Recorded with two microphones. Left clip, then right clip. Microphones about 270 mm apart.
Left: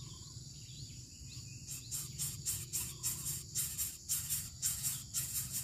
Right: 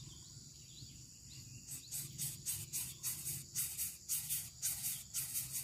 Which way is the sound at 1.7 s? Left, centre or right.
Centre.